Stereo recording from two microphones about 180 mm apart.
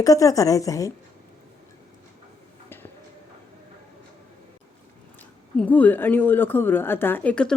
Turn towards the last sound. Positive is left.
turn(degrees=5)  # may be behind; listen again after turning